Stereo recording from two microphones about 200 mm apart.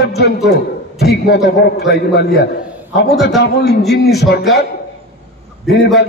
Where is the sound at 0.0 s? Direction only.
55° left (ahead or behind).